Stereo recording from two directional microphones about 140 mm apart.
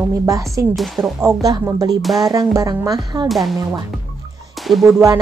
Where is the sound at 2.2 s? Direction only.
25° right (ahead or behind).